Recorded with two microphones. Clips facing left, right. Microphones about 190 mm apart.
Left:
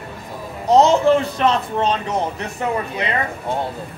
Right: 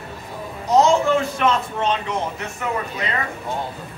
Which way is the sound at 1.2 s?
35° left (ahead or behind).